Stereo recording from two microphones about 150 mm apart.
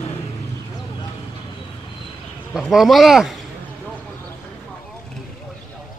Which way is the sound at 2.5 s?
Centre (ahead or behind).